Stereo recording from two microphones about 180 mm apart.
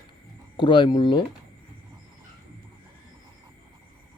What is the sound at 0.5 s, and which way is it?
Speech, 25° left (ahead or behind).